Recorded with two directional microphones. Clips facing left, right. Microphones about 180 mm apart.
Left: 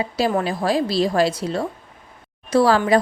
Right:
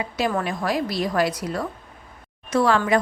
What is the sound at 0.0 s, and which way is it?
A woman's voice, 25° left (ahead or behind).